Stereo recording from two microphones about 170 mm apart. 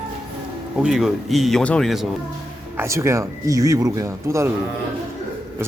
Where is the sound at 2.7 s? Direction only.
15° right (ahead or behind).